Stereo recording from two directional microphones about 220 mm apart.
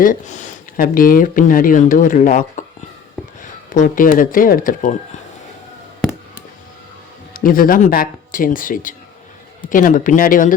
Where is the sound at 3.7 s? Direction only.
35° left (ahead or behind).